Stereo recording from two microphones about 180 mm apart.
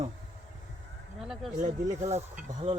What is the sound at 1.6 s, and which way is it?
Speech, 40° right (ahead or behind).